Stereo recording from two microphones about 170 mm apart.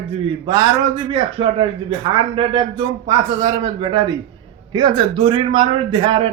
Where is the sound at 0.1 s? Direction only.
25° right (ahead or behind).